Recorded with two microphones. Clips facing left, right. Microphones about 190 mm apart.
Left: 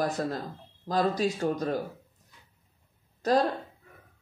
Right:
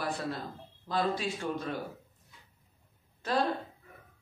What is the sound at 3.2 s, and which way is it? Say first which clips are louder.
Speech: left 7 dB; 40° left (ahead or behind).